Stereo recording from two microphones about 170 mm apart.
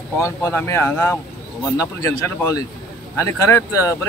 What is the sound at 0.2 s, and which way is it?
Speech, 15° left (ahead or behind).